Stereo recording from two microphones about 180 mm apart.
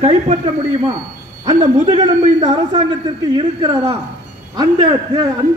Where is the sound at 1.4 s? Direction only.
25° right (ahead or behind).